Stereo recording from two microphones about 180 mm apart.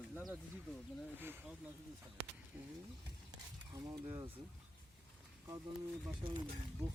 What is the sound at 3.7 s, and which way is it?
Speech, 20° right (ahead or behind).